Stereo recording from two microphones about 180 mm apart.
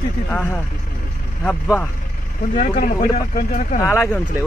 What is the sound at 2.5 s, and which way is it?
Speech, 45° left (ahead or behind).